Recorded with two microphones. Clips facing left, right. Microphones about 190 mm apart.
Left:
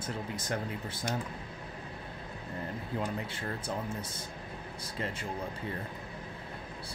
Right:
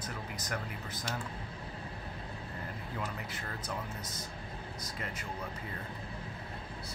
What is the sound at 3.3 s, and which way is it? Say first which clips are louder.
Speech: left 4 dB; 30° left (ahead or behind).